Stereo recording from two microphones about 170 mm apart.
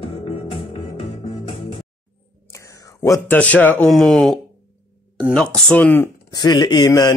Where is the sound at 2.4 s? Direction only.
20° left (ahead or behind).